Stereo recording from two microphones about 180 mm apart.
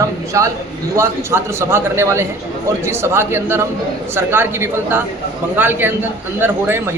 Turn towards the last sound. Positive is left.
turn(degrees=-10)  # may be behind; listen again after turning